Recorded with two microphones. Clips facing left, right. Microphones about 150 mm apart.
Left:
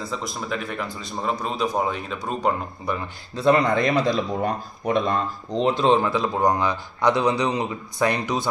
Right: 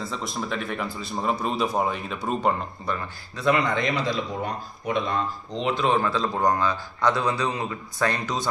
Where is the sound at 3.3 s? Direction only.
35° left (ahead or behind).